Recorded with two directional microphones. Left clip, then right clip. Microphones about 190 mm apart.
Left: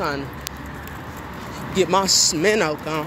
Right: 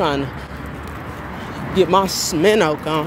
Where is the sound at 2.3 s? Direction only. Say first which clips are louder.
Right 4 dB; 10° right (ahead or behind).